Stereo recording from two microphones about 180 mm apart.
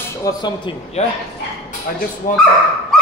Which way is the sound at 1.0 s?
35° left (ahead or behind).